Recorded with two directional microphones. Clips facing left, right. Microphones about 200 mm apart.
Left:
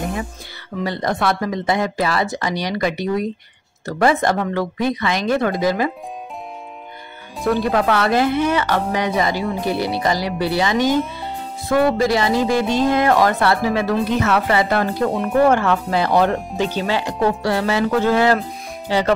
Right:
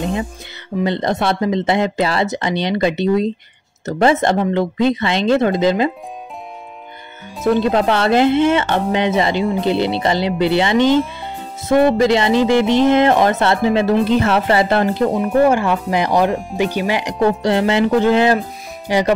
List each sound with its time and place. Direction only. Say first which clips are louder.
0.0 s speech: right 4 dB; 25° right (ahead or behind)
7.4 s speech: right 3 dB; 25° right (ahead or behind)
15.2 s speech: even; 10° right (ahead or behind)